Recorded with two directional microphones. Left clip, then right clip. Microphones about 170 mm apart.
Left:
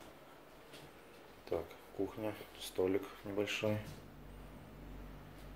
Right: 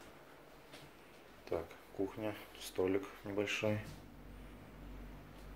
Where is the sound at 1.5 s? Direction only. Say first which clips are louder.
Left 1 dB; centre (ahead or behind).